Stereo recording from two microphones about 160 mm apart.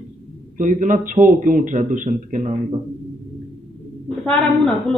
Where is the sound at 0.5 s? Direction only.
55° right (ahead or behind).